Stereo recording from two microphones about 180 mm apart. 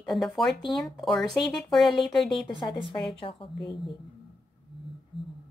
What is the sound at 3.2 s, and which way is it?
Speech, 30° left (ahead or behind).